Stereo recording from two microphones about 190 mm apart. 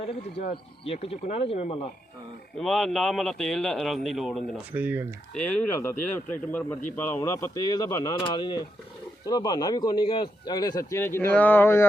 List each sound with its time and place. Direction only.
0.0 s speech: 30° left (ahead or behind)
2.6 s a man's voice: centre (ahead or behind)
5.3 s a man's voice: 10° left (ahead or behind)